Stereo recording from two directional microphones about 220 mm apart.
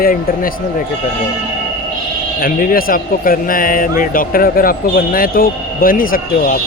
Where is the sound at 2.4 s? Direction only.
40° left (ahead or behind).